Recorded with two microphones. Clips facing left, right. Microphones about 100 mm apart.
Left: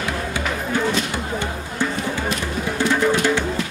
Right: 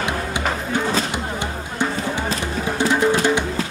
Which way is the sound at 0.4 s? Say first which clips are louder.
Left 1 dB; 40° right (ahead or behind).